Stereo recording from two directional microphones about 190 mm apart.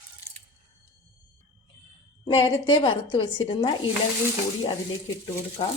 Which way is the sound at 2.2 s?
25° left (ahead or behind).